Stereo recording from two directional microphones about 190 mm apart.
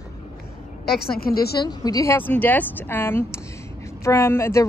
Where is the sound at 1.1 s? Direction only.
50° left (ahead or behind).